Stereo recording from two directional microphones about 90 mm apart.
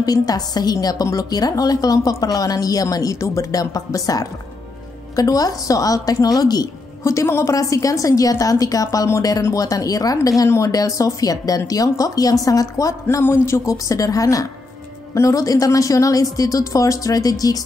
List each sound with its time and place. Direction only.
0.0 s a woman's voice: 45° left (ahead or behind)
7.1 s a woman's voice: 30° left (ahead or behind)